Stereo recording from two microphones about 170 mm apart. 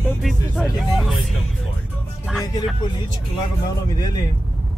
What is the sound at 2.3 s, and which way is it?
Speech, centre (ahead or behind).